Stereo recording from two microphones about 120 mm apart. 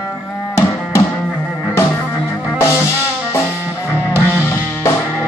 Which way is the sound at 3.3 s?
20° left (ahead or behind).